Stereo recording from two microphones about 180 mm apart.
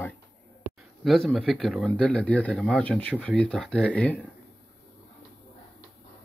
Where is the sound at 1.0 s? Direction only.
Centre (ahead or behind).